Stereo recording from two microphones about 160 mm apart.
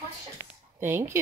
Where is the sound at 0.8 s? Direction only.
15° right (ahead or behind).